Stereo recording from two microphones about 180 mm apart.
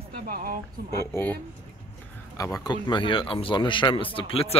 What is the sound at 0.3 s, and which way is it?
Speech, 50° right (ahead or behind).